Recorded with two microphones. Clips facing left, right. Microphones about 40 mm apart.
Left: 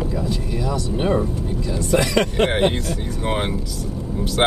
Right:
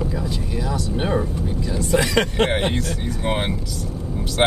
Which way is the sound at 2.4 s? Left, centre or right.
Centre.